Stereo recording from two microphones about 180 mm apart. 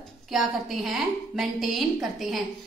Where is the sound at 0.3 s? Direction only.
Centre (ahead or behind).